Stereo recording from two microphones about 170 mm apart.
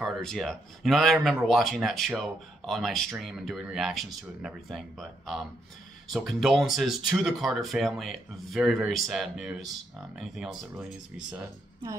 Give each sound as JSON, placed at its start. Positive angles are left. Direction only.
{"t": 0.0, "sound": "speech", "side_deg": 0}